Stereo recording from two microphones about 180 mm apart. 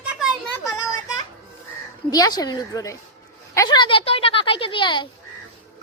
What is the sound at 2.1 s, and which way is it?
A woman's voice, 20° left (ahead or behind).